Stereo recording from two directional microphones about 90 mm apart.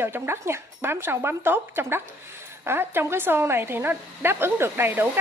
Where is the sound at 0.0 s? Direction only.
25° right (ahead or behind).